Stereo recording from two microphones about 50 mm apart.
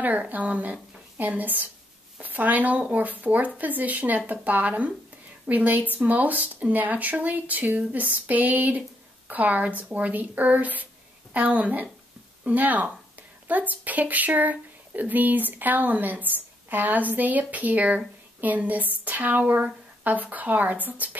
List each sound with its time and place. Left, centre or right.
0.0 s speech: right